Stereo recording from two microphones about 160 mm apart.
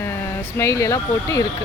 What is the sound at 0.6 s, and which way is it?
Speech, 20° left (ahead or behind).